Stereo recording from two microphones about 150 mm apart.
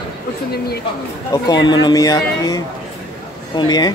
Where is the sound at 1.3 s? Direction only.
25° left (ahead or behind).